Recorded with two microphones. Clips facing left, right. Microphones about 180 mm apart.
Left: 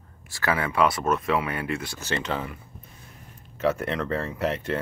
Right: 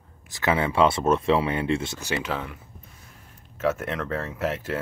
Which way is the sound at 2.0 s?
10° right (ahead or behind).